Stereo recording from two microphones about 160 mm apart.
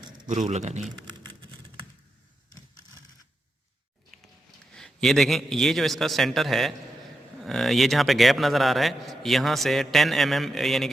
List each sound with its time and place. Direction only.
0.3 s a man's voice: 50° right (ahead or behind)
4.7 s a man's voice: 5° left (ahead or behind)